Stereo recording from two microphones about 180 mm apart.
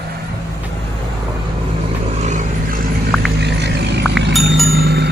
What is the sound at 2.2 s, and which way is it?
Vehicle, 40° right (ahead or behind).